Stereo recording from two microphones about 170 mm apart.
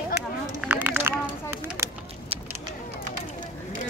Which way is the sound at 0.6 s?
10° right (ahead or behind).